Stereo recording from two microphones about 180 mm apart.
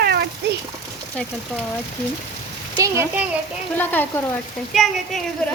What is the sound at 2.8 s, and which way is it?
Speech, 10° right (ahead or behind).